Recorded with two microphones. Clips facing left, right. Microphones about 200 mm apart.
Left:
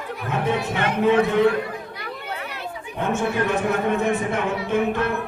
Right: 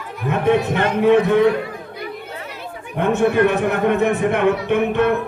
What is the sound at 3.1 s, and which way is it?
Speech, 60° right (ahead or behind).